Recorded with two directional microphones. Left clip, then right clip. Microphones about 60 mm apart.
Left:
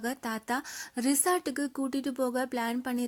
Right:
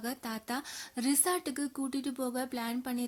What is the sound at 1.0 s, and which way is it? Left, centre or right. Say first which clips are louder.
A woman's voice: left 4 dB; left.